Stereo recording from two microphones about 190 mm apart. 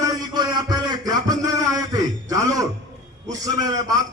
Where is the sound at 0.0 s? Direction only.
20° right (ahead or behind).